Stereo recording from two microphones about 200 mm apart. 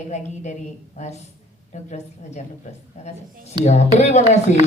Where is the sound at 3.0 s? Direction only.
35° left (ahead or behind).